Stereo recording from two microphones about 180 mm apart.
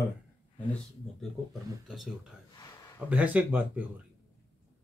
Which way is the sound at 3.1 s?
10° right (ahead or behind).